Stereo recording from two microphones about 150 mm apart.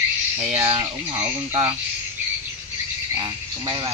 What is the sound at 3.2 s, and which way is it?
Frog, 30° right (ahead or behind).